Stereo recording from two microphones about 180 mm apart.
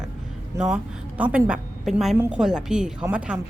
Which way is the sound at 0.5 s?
15° right (ahead or behind).